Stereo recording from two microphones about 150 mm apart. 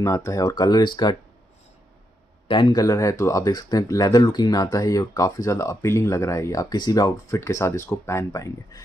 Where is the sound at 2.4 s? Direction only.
30° left (ahead or behind).